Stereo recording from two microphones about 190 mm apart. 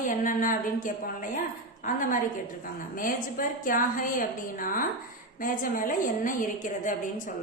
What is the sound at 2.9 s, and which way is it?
A woman's voice, 45° left (ahead or behind).